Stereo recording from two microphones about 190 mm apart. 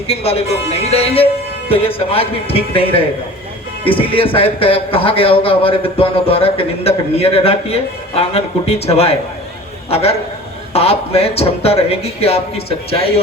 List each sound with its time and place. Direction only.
0.1 s a man's voice: 30° left (ahead or behind)